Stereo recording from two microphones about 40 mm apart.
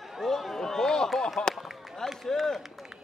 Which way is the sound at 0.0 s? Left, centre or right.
Centre.